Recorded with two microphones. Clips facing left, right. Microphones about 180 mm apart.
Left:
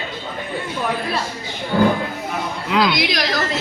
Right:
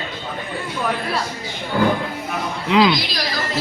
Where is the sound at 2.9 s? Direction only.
75° left (ahead or behind).